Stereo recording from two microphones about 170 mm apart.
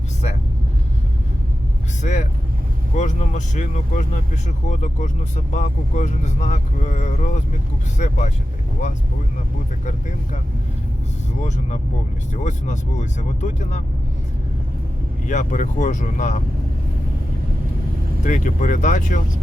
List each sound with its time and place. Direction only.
2.0 s speech: 45° left (ahead or behind)
11.4 s speech: 45° left (ahead or behind)
15.3 s speech: 45° left (ahead or behind)
18.2 s speech: 45° left (ahead or behind)